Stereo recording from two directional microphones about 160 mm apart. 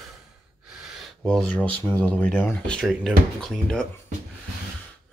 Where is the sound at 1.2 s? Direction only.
5° left (ahead or behind).